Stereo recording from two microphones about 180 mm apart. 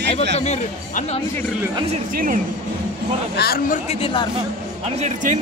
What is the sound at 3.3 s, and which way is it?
Speech, 60° left (ahead or behind).